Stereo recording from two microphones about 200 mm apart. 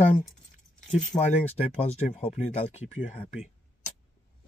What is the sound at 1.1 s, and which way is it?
Speech, 20° left (ahead or behind).